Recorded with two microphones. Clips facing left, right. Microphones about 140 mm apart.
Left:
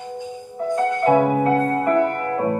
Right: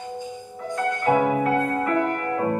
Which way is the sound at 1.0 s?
35° left (ahead or behind).